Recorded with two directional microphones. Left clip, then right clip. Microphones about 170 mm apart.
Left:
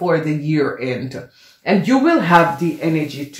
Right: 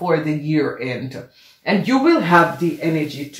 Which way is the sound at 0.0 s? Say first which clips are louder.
Left 1 dB; 35° left (ahead or behind).